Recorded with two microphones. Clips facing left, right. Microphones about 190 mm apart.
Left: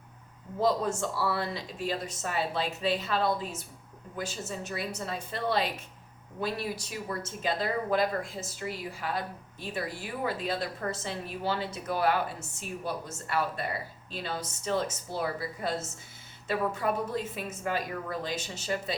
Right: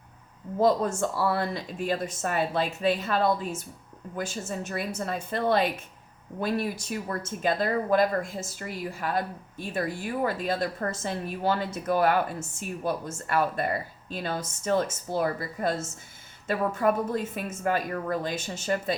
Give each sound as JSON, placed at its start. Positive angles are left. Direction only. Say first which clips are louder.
{"t": 0.6, "sound": "speech", "louder": "right 4 dB", "side_deg": -50}